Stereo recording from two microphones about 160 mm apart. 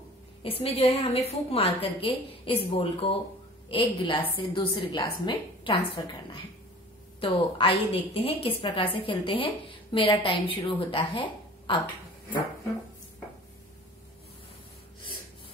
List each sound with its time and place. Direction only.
0.4 s a woman's voice: 35° left (ahead or behind)
7.2 s a woman's voice: 35° left (ahead or behind)